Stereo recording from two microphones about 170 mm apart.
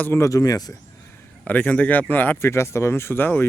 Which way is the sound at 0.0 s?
15° left (ahead or behind).